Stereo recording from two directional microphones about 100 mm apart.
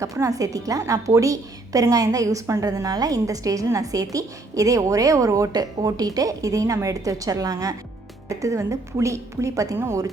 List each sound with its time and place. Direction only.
0.0 s a woman's voice: 35° right (ahead or behind)